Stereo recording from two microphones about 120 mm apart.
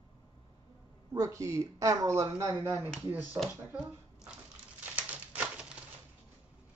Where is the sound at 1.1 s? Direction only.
25° right (ahead or behind).